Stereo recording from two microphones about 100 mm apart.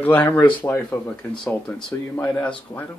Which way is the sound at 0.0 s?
20° left (ahead or behind).